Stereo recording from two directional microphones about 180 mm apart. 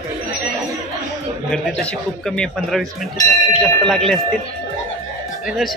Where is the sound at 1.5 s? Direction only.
5° left (ahead or behind).